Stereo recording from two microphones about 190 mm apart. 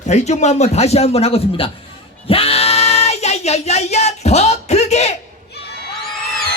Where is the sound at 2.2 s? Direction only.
30° left (ahead or behind).